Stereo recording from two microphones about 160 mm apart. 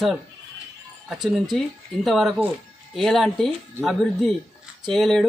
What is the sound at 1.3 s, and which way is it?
Speech, centre (ahead or behind).